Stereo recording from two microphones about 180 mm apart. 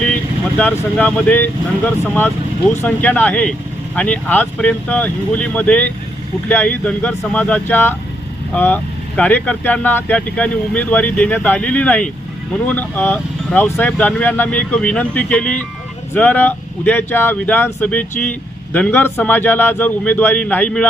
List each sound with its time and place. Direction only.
0.6 s speech: 10° left (ahead or behind)